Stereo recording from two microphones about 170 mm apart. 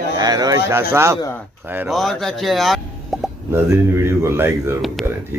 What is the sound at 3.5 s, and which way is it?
A man's voice, 15° right (ahead or behind).